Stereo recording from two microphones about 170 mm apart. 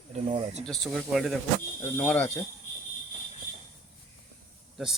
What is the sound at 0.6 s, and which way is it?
Speech, centre (ahead or behind).